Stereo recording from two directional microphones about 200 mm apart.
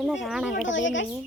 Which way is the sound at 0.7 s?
70° left (ahead or behind).